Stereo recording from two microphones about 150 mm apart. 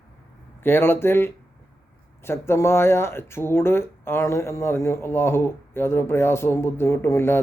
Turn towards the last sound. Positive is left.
turn(degrees=15)  # may be behind; listen again after turning